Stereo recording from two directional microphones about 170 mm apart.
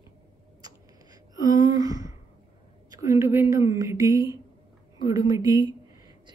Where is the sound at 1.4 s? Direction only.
20° right (ahead or behind).